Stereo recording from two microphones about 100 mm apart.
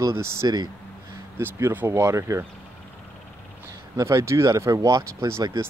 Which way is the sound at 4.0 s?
30° right (ahead or behind).